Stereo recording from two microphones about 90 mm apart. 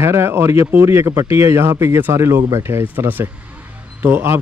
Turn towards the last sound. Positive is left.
turn(degrees=-25)  # may be behind; listen again after turning